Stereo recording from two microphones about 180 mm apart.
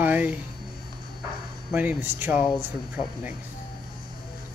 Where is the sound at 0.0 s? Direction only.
10° right (ahead or behind).